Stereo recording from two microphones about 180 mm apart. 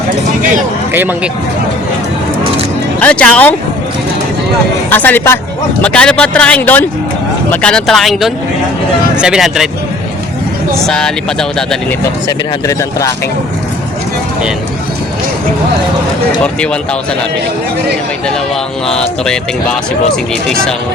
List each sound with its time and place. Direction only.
0.9 s speech: 10° right (ahead or behind)
3.0 s speech: 10° left (ahead or behind)
4.9 s speech: 10° left (ahead or behind)
10.8 s speech: 5° left (ahead or behind)
12.6 s speech: 20° left (ahead or behind)
16.4 s speech: 5° left (ahead or behind)
18.9 s speech: 5° left (ahead or behind)